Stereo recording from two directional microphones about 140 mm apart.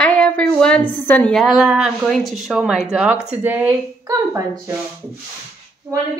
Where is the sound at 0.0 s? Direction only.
10° left (ahead or behind).